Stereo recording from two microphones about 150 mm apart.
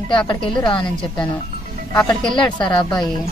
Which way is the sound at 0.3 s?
30° left (ahead or behind).